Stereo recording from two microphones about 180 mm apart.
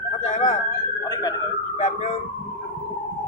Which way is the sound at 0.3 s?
40° left (ahead or behind).